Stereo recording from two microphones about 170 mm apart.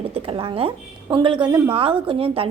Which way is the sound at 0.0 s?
35° right (ahead or behind).